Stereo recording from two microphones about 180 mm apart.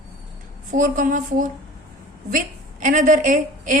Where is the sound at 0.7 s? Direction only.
45° right (ahead or behind).